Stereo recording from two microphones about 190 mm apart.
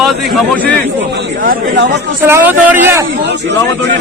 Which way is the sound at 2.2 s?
10° right (ahead or behind).